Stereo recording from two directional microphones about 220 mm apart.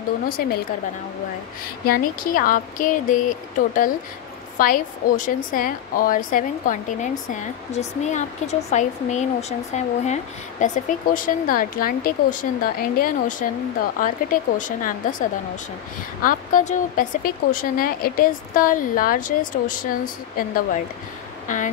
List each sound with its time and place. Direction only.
1.9 s a woman's voice: 40° left (ahead or behind)